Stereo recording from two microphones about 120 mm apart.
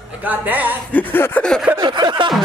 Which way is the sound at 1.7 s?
40° right (ahead or behind).